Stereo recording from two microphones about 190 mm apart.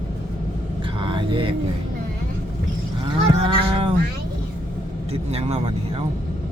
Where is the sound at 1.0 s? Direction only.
25° right (ahead or behind).